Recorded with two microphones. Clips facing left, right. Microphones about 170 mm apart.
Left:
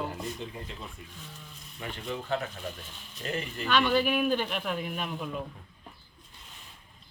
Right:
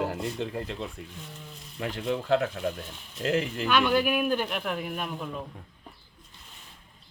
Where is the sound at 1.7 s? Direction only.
90° right.